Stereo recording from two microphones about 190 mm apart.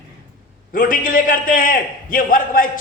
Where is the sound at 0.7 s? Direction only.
45° left (ahead or behind).